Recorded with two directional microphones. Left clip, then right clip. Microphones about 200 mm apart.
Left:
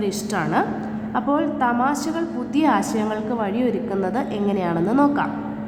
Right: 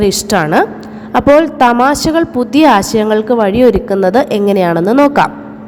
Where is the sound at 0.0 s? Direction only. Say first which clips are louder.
Right 12 dB; 45° right (ahead or behind).